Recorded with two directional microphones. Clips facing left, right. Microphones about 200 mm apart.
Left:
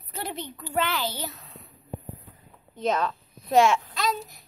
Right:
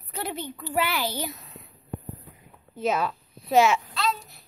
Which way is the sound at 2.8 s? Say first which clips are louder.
Even; 5° right (ahead or behind).